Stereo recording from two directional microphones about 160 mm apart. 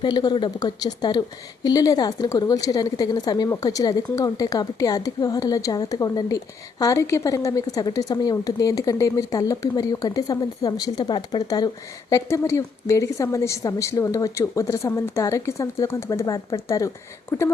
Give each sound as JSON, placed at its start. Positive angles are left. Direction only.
{"t": 0.0, "sound": "a woman's voice", "side_deg": 25}